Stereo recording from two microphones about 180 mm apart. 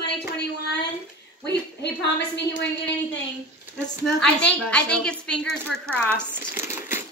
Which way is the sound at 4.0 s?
5° left (ahead or behind).